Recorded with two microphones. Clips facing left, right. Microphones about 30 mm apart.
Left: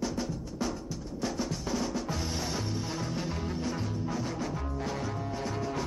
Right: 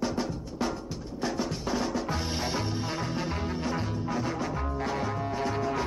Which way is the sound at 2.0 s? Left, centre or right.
Right.